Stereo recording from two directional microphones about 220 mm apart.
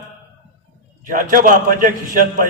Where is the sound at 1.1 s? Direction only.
35° right (ahead or behind).